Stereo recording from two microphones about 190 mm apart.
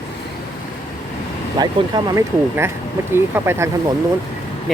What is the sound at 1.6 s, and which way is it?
Speech, 20° right (ahead or behind).